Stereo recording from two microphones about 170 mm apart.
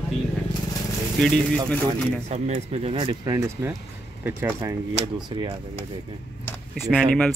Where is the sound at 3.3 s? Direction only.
20° right (ahead or behind).